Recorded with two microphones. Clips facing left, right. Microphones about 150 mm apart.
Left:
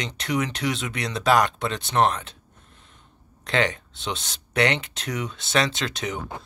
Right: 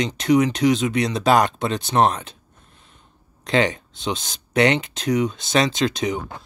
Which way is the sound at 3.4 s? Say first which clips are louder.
Right 4 dB; 20° right (ahead or behind).